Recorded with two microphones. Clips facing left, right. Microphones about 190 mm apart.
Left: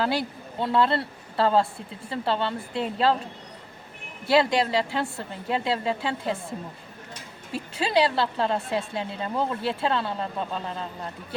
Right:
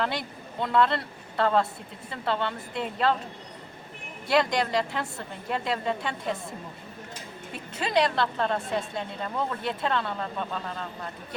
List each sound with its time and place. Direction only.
0.0 s speech: 30° left (ahead or behind)
4.3 s speech: 30° left (ahead or behind)
7.5 s speech: 30° left (ahead or behind)